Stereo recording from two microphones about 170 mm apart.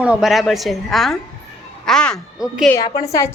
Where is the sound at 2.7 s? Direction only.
20° left (ahead or behind).